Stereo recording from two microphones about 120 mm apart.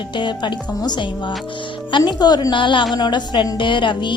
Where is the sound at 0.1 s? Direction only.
40° left (ahead or behind).